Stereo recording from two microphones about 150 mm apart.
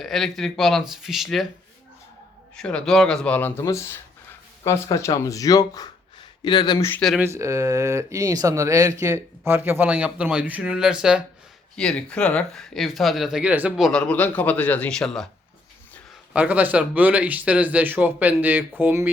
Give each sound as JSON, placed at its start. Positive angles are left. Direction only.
{"t": 0.0, "sound": "speech", "side_deg": 0}
{"t": 2.6, "sound": "speech", "side_deg": 5}
{"t": 7.2, "sound": "speech", "side_deg": -20}
{"t": 11.8, "sound": "speech", "side_deg": 5}
{"t": 16.3, "sound": "speech", "side_deg": -10}